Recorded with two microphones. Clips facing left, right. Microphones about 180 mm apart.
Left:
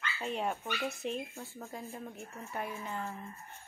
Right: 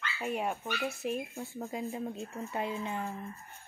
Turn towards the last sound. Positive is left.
turn(degrees=-15)  # may be behind; listen again after turning